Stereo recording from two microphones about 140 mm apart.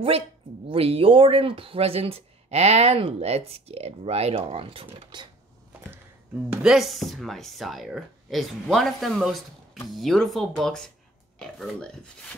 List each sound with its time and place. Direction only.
0.7 s speech: 45° right (ahead or behind)
5.1 s a sound: 35° right (ahead or behind)
6.6 s speech: 5° right (ahead or behind)